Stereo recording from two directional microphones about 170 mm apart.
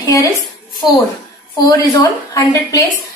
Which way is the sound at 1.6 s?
20° left (ahead or behind).